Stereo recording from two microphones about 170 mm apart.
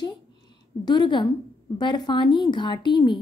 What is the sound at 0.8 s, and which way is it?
Speech, 25° left (ahead or behind).